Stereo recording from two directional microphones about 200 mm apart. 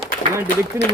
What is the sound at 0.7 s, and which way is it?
Speech, 10° right (ahead or behind).